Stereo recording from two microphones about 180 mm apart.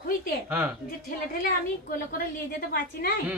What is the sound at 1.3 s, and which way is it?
A woman's voice, 55° left (ahead or behind).